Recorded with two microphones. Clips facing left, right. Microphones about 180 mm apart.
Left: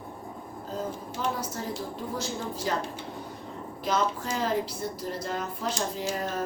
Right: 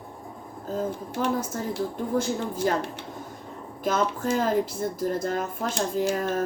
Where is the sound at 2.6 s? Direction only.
50° right (ahead or behind).